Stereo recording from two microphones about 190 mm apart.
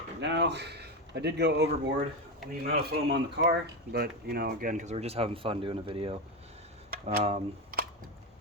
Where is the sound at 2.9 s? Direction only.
60° right (ahead or behind); by 6.2 s 30° right (ahead or behind).